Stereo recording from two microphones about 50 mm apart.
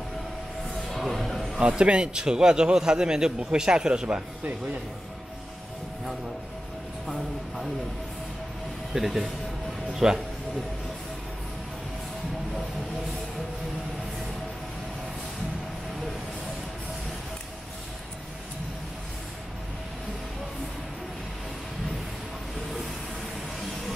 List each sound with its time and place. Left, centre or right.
0.8 s a sound: centre
1.6 s a man's voice: centre
8.9 s a man's voice: centre